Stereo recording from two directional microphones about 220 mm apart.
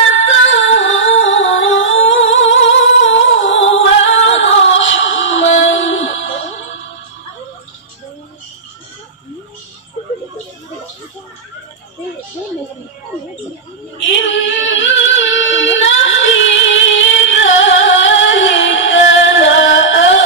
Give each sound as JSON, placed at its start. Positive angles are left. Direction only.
{"t": 0.5, "sound": "music", "side_deg": 60}
{"t": 1.7, "sound": "singing", "side_deg": 60}
{"t": 4.4, "sound": "music", "side_deg": 60}
{"t": 13.9, "sound": "female singing", "side_deg": 60}